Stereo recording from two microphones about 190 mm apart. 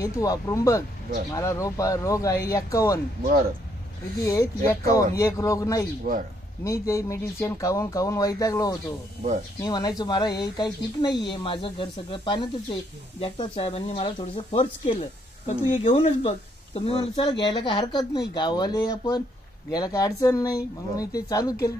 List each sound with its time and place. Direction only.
0.0 s speech: 20° left (ahead or behind)
4.2 s speech: 15° left (ahead or behind)